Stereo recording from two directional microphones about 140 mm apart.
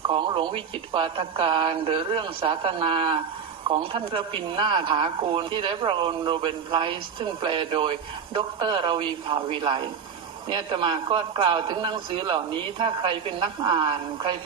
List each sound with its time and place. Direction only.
0.1 s speech: 35° right (ahead or behind)